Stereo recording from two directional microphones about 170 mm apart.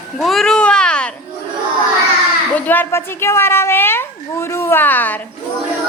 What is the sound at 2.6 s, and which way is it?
A child's voice, 10° left (ahead or behind).